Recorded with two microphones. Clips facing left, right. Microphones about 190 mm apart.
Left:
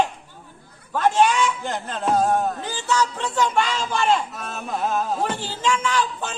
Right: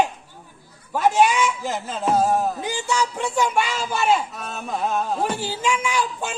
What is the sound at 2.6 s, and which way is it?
A man's voice, 10° right (ahead or behind).